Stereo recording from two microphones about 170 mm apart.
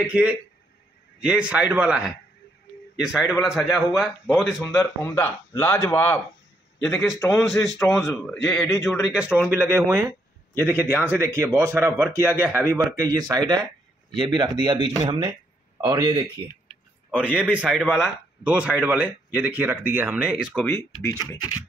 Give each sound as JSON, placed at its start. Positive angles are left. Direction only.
{"t": 0.0, "sound": "a man's voice", "side_deg": -5}
{"t": 4.7, "sound": "a man's voice", "side_deg": 20}
{"t": 7.3, "sound": "a man's voice", "side_deg": 0}
{"t": 9.6, "sound": "a man's voice", "side_deg": -15}
{"t": 17.1, "sound": "speech", "side_deg": -5}
{"t": 20.5, "sound": "speech", "side_deg": 5}
{"t": 21.0, "sound": "speech", "side_deg": 20}